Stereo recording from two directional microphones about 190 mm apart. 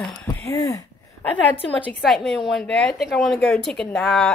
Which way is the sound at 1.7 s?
5° left (ahead or behind).